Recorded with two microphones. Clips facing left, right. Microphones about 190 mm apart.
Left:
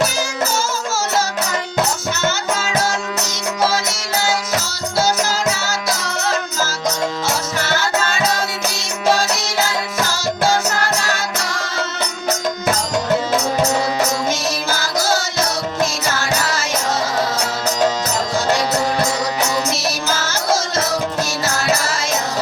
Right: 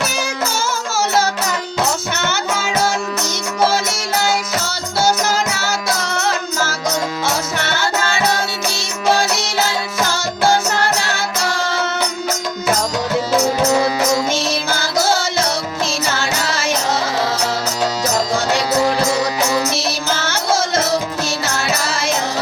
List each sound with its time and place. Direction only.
0.6 s music: 60° right (ahead or behind)
20.2 s music: 60° right (ahead or behind)